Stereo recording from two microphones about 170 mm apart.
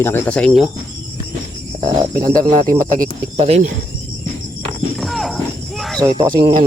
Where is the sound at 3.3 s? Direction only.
35° right (ahead or behind).